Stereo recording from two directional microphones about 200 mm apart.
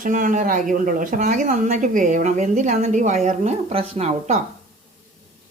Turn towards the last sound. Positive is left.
turn(degrees=-30)  # may be behind; listen again after turning